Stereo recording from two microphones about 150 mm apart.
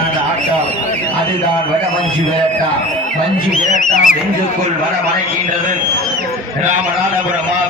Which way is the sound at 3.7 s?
60° left (ahead or behind).